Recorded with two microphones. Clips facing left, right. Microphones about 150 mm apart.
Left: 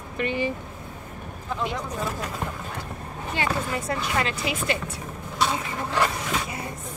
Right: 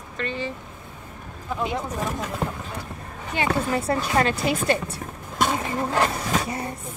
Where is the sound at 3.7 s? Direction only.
35° right (ahead or behind).